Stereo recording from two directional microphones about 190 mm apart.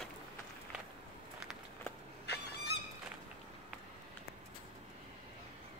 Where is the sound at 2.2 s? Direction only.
60° left (ahead or behind).